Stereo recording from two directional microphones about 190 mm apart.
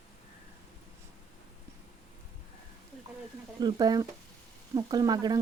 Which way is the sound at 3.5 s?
20° right (ahead or behind).